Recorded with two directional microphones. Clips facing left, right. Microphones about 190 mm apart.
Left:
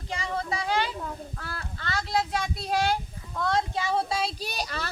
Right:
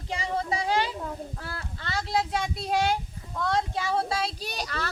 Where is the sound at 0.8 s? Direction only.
30° right (ahead or behind).